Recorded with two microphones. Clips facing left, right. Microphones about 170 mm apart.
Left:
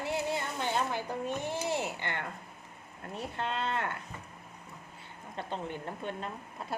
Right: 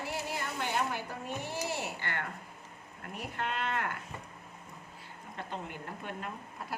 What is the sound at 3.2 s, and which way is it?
Speech, 30° left (ahead or behind).